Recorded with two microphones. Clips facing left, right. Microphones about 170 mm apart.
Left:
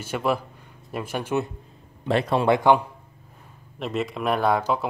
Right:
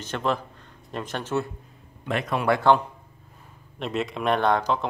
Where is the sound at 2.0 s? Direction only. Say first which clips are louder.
Left 4 dB; 30° left (ahead or behind).